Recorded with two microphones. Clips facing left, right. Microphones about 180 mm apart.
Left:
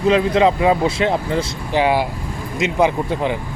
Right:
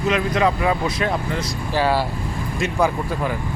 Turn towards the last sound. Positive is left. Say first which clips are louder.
# left 3 dB
turn(degrees=20)  # may be behind; listen again after turning